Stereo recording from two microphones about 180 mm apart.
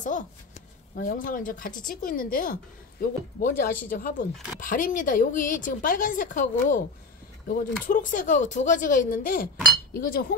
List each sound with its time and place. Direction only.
0.0 s a woman's voice: 45° left (ahead or behind)
7.8 s a woman's voice: 45° left (ahead or behind)